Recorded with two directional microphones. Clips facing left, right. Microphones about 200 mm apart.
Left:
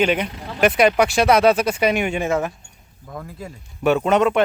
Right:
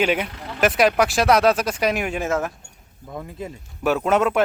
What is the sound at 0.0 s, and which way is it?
Speech, 5° right (ahead or behind).